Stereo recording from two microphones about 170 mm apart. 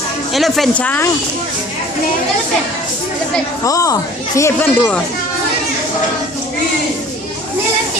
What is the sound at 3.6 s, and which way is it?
Speech, 20° left (ahead or behind).